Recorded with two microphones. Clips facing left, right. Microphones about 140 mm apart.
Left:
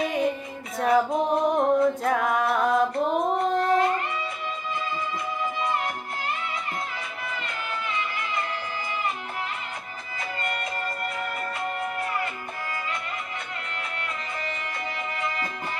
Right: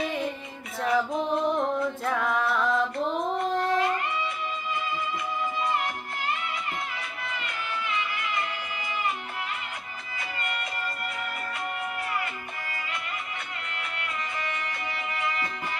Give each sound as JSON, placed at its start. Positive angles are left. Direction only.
{"t": 0.7, "sound": "music", "side_deg": 45}
{"t": 14.7, "sound": "music", "side_deg": 35}